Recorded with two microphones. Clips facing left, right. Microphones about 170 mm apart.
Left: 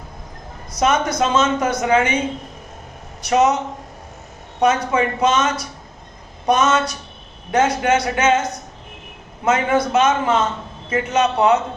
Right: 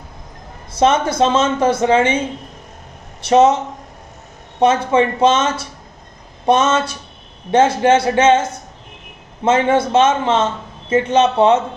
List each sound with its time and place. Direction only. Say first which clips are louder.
0.7 s speech: right 3 dB; 30° right (ahead or behind)
4.6 s speech: right 3 dB; 30° right (ahead or behind)